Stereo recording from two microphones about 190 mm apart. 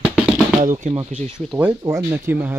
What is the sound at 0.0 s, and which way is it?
Drum, 5° right (ahead or behind).